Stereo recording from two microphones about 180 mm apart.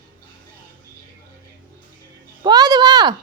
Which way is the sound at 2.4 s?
20° right (ahead or behind).